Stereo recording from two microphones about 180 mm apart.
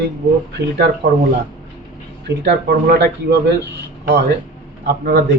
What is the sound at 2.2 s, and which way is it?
A man's voice, 65° right (ahead or behind).